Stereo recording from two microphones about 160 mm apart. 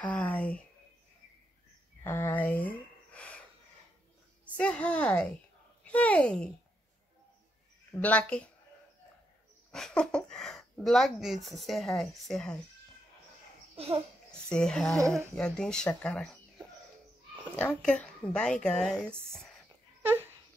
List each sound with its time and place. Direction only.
0.0 s a woman's voice: 10° left (ahead or behind)
2.0 s a sound: 10° left (ahead or behind)
4.6 s a woman's voice: 5° left (ahead or behind)
7.9 s a woman's voice: 10° left (ahead or behind)
9.7 s speech: 5° left (ahead or behind)
13.7 s a child's voice: 40° right (ahead or behind)
14.3 s speech: 5° left (ahead or behind)
15.0 s speech: 20° right (ahead or behind)
15.3 s speech: 5° left (ahead or behind)